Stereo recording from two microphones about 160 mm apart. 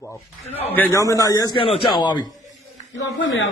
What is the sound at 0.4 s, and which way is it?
Speech, 40° left (ahead or behind).